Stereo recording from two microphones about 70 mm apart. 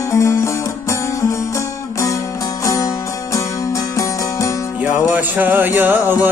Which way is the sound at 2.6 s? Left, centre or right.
Left.